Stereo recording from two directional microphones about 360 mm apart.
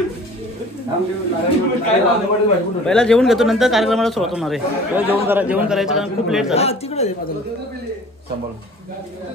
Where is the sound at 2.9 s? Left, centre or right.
Centre.